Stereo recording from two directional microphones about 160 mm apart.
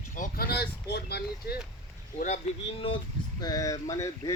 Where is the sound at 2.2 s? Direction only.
50° left (ahead or behind).